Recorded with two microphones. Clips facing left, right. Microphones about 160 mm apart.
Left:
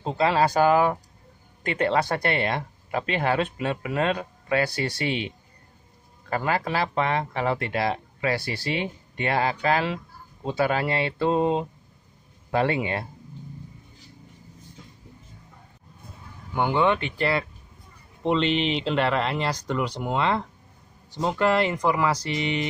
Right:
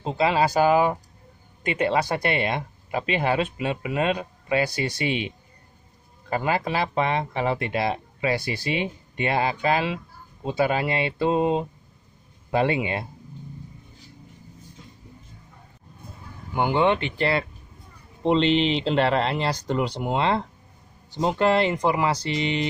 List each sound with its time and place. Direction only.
0.0 s speech: 5° right (ahead or behind)
6.3 s speech: 20° right (ahead or behind)
16.5 s speech: 10° right (ahead or behind)
16.8 s speech: 25° right (ahead or behind)